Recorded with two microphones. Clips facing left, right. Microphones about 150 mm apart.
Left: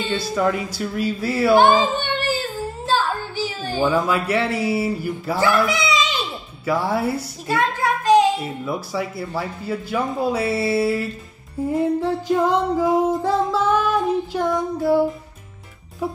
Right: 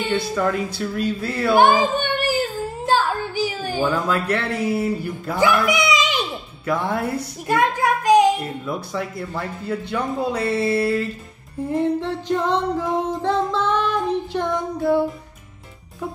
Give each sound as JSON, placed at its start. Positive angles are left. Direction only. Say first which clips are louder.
{"t": 0.3, "sound": "speech", "louder": "left 1 dB", "side_deg": 5}
{"t": 1.5, "sound": "speech", "louder": "even", "side_deg": -15}
{"t": 2.9, "sound": "child singing", "louder": "right 2 dB", "side_deg": -15}
{"t": 3.8, "sound": "music", "louder": "left 2 dB", "side_deg": 10}
{"t": 5.7, "sound": "a sound", "louder": "right 2 dB", "side_deg": -15}
{"t": 6.6, "sound": "speech", "louder": "left 2 dB", "side_deg": 5}
{"t": 7.4, "sound": "child singing", "louder": "right 2 dB", "side_deg": -15}
{"t": 8.4, "sound": "speech", "louder": "left 1 dB", "side_deg": 5}
{"t": 11.7, "sound": "music", "louder": "left 1 dB", "side_deg": 5}